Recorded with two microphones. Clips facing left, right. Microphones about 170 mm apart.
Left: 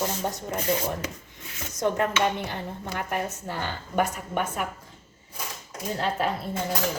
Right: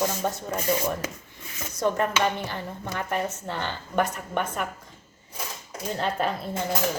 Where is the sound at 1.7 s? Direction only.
20° left (ahead or behind).